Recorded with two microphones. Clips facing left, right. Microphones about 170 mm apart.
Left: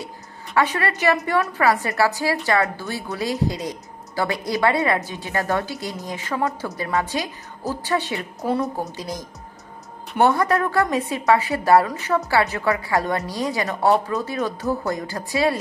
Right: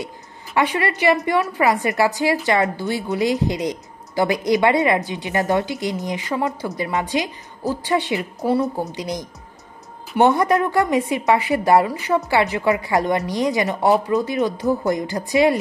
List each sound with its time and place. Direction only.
0.7 s speech: 10° right (ahead or behind)
8.2 s a woman's voice: centre (ahead or behind)
8.9 s speech: 20° right (ahead or behind)